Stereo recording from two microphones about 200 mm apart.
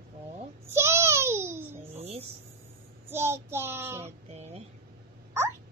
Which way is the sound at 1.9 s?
30° right (ahead or behind).